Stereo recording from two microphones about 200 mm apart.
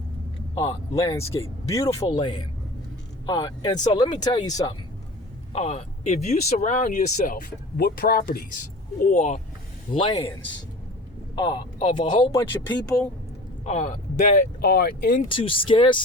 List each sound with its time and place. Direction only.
0.6 s speech: 15° left (ahead or behind)
5.5 s speech: 30° left (ahead or behind)
10.0 s speech: 20° left (ahead or behind)
11.3 s speech: 20° left (ahead or behind)
13.7 s speech: 35° left (ahead or behind)
15.3 s speech: 25° left (ahead or behind)